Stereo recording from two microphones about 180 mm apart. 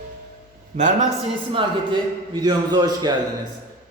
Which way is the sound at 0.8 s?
45° right (ahead or behind).